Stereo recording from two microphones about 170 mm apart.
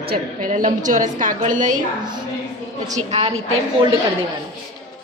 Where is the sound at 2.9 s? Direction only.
40° right (ahead or behind).